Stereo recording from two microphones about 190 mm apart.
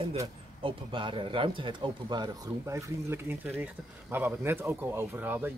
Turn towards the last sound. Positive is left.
turn(degrees=-10)  # may be behind; listen again after turning